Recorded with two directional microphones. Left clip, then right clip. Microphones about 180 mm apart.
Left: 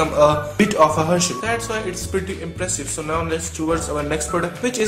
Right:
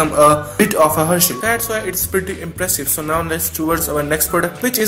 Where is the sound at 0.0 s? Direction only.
25° right (ahead or behind).